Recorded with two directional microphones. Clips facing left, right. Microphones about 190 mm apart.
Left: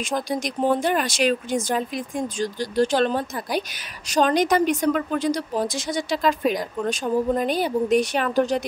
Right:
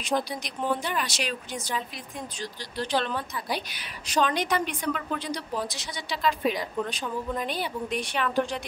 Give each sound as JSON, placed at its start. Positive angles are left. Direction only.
{"t": 0.3, "sound": "a woman's voice", "side_deg": 45}